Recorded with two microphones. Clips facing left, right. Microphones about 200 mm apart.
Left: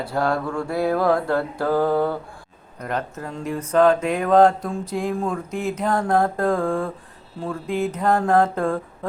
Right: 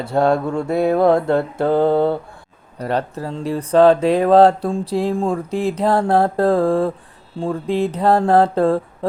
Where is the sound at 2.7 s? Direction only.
35° right (ahead or behind).